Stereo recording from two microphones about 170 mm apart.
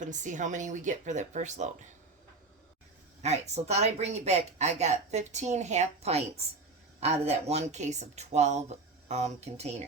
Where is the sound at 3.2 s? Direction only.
40° right (ahead or behind).